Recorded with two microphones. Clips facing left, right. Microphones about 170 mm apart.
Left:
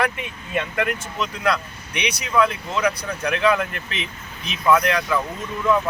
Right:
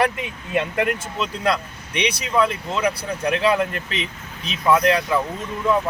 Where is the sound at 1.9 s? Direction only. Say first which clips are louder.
Right 2 dB; 30° right (ahead or behind).